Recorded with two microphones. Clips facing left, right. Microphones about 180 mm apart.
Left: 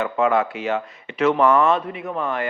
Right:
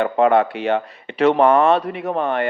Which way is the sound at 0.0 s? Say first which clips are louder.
Right 4 dB; 60° right (ahead or behind).